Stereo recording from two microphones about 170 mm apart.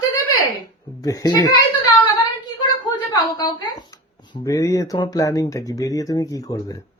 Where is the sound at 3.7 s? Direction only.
25° left (ahead or behind).